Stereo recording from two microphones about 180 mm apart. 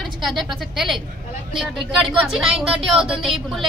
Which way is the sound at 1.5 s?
Centre (ahead or behind).